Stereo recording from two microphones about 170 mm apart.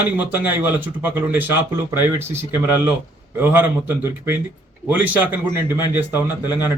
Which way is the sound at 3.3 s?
10° right (ahead or behind).